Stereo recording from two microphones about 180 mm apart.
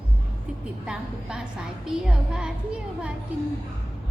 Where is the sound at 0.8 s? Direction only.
5° right (ahead or behind).